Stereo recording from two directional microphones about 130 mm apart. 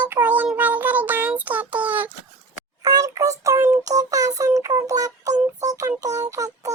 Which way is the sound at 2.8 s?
25° right (ahead or behind).